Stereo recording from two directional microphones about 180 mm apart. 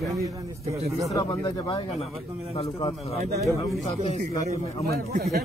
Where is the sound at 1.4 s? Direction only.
30° left (ahead or behind).